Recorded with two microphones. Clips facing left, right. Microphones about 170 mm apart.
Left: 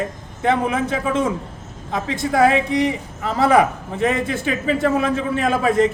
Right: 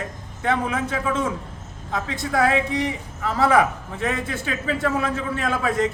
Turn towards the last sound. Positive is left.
turn(degrees=20)  # may be behind; listen again after turning